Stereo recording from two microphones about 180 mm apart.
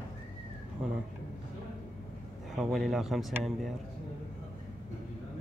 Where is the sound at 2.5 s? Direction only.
Centre (ahead or behind).